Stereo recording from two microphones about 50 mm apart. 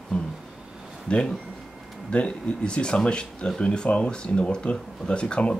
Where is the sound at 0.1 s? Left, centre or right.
Left.